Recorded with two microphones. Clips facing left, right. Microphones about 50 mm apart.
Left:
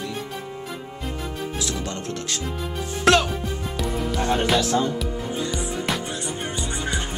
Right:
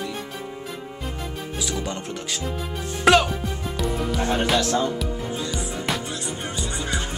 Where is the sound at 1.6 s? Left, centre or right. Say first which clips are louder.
Even; centre.